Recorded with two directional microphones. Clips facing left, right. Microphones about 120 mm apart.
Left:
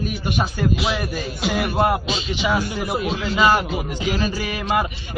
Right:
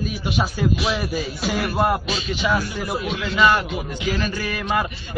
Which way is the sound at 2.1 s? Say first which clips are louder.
Even; 25° left (ahead or behind).